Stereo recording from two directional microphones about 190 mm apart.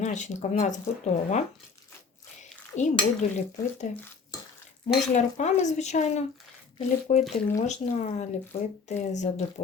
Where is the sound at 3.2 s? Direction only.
40° left (ahead or behind).